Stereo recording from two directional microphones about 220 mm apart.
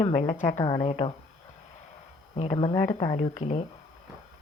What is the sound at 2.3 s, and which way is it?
A woman's voice, 25° left (ahead or behind).